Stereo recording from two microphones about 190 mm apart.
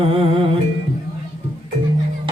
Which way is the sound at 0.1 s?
30° right (ahead or behind).